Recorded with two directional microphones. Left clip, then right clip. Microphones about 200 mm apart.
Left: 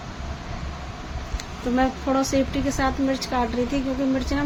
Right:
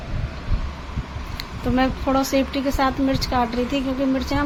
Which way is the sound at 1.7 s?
10° right (ahead or behind).